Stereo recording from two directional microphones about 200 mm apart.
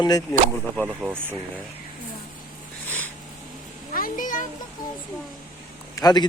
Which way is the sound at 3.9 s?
45° left (ahead or behind).